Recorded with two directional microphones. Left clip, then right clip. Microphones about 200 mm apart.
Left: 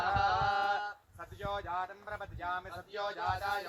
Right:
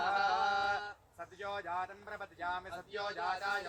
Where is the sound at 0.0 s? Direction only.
15° right (ahead or behind).